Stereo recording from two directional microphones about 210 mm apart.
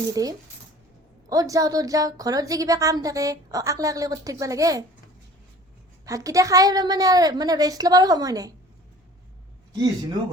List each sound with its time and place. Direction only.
0.1 s a woman's voice: 15° right (ahead or behind)
6.1 s a woman's voice: 15° right (ahead or behind)